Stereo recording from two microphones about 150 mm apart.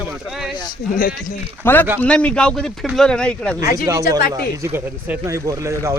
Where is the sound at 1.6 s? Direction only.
10° left (ahead or behind).